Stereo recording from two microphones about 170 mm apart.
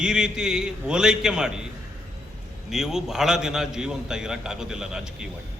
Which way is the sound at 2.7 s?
5° right (ahead or behind).